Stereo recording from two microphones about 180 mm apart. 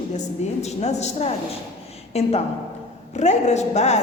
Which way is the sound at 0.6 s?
40° left (ahead or behind).